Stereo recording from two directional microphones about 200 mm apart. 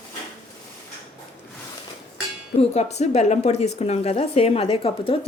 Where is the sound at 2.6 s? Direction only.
35° left (ahead or behind).